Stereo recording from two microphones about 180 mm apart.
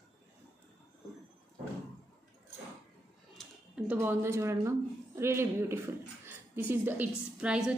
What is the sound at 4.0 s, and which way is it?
A woman's voice, 15° right (ahead or behind).